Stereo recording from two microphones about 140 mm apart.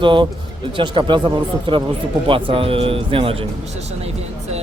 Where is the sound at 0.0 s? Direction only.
35° right (ahead or behind).